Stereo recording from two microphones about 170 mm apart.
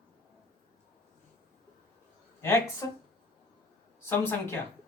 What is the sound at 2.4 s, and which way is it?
Speech, 15° left (ahead or behind).